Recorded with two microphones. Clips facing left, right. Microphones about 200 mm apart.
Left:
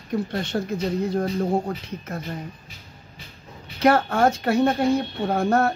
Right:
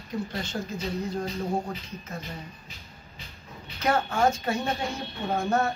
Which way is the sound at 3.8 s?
65° left (ahead or behind).